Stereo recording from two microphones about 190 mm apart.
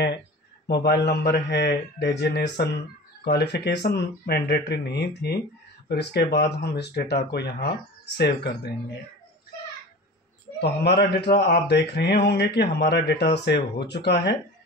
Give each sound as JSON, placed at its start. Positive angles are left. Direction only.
{"t": 0.8, "sound": "speech", "side_deg": 60}
{"t": 10.6, "sound": "speech", "side_deg": 60}